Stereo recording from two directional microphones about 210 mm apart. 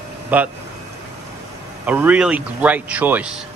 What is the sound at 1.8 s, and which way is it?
Speech, 5° right (ahead or behind).